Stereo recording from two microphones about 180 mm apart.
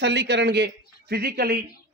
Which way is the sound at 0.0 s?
75° right (ahead or behind).